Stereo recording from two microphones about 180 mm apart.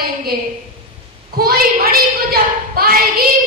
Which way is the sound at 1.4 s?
55° right (ahead or behind).